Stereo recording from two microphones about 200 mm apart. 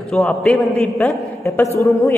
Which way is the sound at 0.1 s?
5° left (ahead or behind).